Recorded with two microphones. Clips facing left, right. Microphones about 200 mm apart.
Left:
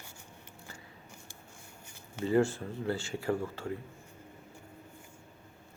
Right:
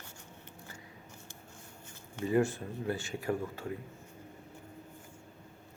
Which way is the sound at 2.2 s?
15° right (ahead or behind).